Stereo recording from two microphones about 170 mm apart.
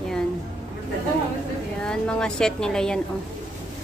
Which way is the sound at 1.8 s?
5° left (ahead or behind).